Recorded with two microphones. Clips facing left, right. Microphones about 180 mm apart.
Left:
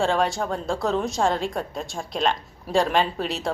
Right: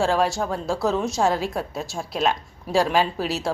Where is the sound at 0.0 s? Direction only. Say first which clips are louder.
Right 1 dB; centre (ahead or behind).